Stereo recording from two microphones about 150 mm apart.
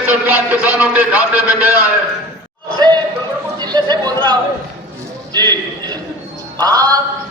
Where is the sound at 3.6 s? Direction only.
30° right (ahead or behind).